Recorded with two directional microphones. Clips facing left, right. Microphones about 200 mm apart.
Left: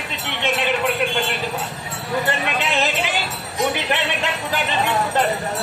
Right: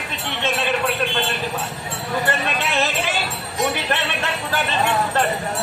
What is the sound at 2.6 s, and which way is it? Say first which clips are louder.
Speech: even; 15° left (ahead or behind).